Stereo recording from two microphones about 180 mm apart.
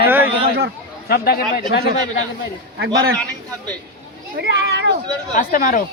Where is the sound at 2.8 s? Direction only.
60° right (ahead or behind).